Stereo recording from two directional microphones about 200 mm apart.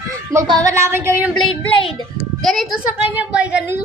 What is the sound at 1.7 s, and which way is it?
Speech, 25° left (ahead or behind).